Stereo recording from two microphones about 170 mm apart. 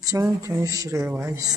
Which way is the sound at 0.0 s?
20° right (ahead or behind).